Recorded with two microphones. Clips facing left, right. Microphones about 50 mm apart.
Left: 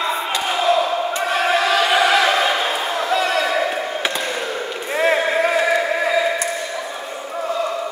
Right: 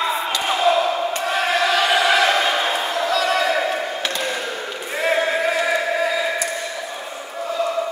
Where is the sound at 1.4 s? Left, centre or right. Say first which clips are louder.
Left 1 dB; centre.